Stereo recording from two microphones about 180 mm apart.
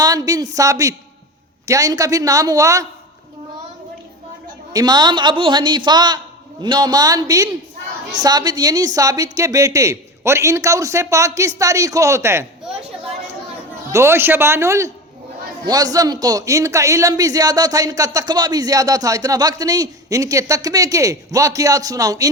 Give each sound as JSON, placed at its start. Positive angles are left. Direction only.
{"t": 0.0, "sound": "a man's voice", "side_deg": -20}
{"t": 4.7, "sound": "a man's voice", "side_deg": -20}
{"t": 13.9, "sound": "a woman's voice", "side_deg": -15}